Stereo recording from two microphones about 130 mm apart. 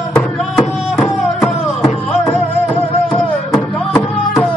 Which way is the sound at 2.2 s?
15° left (ahead or behind).